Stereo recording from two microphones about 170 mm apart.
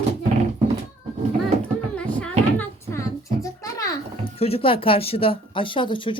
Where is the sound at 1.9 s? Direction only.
5° left (ahead or behind).